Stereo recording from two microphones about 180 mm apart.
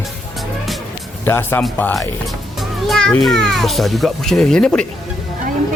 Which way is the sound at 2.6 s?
Centre (ahead or behind).